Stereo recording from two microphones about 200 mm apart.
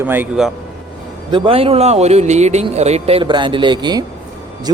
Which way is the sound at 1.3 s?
25° right (ahead or behind).